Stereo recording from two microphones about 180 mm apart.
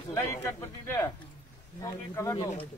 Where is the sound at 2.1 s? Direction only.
15° left (ahead or behind).